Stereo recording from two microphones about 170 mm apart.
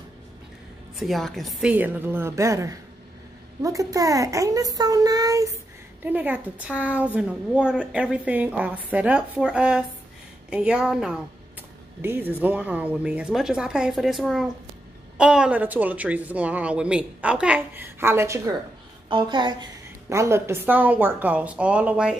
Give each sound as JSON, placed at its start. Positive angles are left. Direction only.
{"t": 0.9, "sound": "a child's voice", "side_deg": 0}
{"t": 19.0, "sound": "speech", "side_deg": -25}